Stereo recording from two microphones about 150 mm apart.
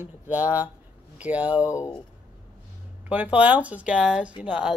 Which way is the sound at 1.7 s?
20° left (ahead or behind).